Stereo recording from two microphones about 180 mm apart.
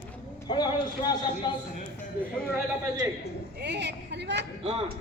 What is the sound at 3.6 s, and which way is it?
Speech, 70° right (ahead or behind).